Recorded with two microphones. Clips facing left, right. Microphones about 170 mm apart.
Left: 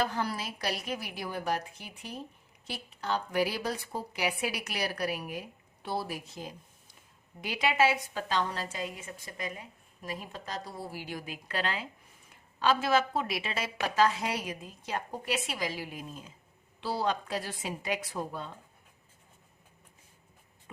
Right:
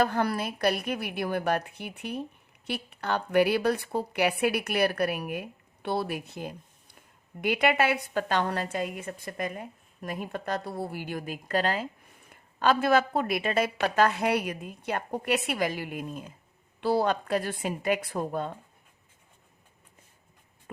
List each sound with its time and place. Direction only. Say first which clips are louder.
0.0 s a woman's voice: right 6 dB; 60° right (ahead or behind)